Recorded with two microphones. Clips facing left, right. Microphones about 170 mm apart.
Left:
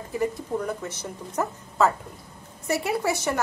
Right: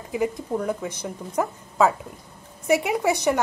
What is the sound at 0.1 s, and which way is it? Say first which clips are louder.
A woman's voice: right 2 dB; 10° right (ahead or behind).